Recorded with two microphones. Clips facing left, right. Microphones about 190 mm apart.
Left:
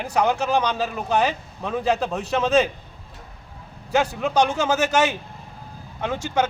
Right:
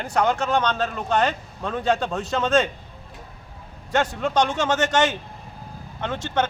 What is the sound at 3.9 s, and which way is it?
A man's voice, 10° left (ahead or behind).